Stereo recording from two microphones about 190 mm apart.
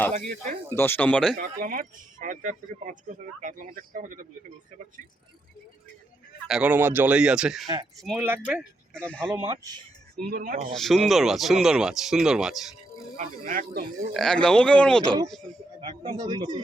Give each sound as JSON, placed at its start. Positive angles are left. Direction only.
{"t": 0.1, "sound": "speech", "side_deg": -40}
{"t": 0.8, "sound": "speech", "side_deg": 10}
{"t": 1.4, "sound": "speech", "side_deg": -45}
{"t": 6.5, "sound": "speech", "side_deg": -10}
{"t": 8.9, "sound": "a man's voice", "side_deg": 5}
{"t": 9.3, "sound": "speech", "side_deg": -20}
{"t": 10.2, "sound": "speech", "side_deg": -50}
{"t": 10.8, "sound": "speech", "side_deg": 0}
{"t": 13.1, "sound": "speech", "side_deg": -45}
{"t": 14.1, "sound": "speech", "side_deg": 5}
{"t": 15.8, "sound": "speech", "side_deg": -25}